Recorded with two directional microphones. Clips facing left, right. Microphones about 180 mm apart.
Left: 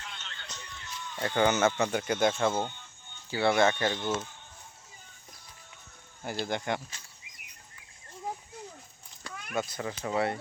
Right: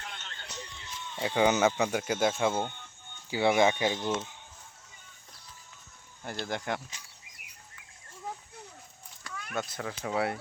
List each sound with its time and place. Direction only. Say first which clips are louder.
0.0 s a sound: right 1 dB; 50° right (ahead or behind)
0.6 s run: left 1 dB; 25° right (ahead or behind)
1.1 s speech: right 1 dB; 5° right (ahead or behind)
2.6 s music: right 1 dB; 55° right (ahead or behind)
3.2 s speech: right 1 dB; 15° right (ahead or behind)
6.4 s speech: left 2 dB; centre (ahead or behind)
9.2 s a sound: left 1 dB; 15° left (ahead or behind)
9.6 s speech: left 2 dB; centre (ahead or behind)